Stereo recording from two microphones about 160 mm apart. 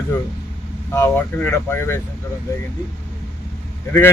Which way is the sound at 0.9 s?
15° left (ahead or behind).